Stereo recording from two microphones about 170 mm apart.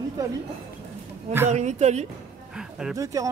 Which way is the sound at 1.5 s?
45° right (ahead or behind).